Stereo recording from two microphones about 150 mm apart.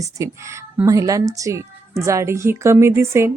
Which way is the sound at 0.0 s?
20° right (ahead or behind).